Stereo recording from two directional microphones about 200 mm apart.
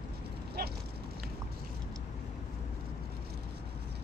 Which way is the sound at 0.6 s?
50° right (ahead or behind).